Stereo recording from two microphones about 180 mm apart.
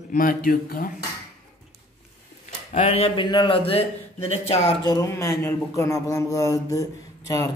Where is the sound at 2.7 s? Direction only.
35° left (ahead or behind).